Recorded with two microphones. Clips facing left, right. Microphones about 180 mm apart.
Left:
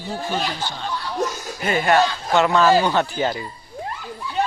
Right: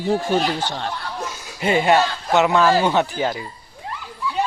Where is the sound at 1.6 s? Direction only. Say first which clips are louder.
Right 1 dB; 20° right (ahead or behind).